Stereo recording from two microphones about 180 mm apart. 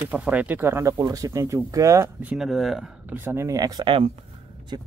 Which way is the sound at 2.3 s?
Centre (ahead or behind).